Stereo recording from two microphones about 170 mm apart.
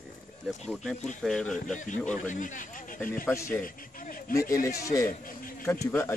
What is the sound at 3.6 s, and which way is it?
Speech, 55° left (ahead or behind).